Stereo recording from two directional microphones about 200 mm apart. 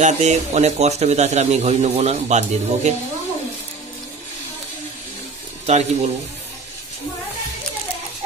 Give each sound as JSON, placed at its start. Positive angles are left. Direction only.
{"t": 0.0, "sound": "a man's voice", "side_deg": -35}
{"t": 5.7, "sound": "a man's voice", "side_deg": -35}